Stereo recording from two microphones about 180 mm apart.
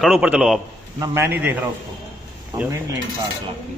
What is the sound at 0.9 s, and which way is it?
Speech, 15° right (ahead or behind).